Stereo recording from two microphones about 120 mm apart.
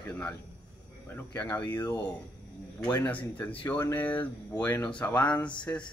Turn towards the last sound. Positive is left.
turn(degrees=10)  # may be behind; listen again after turning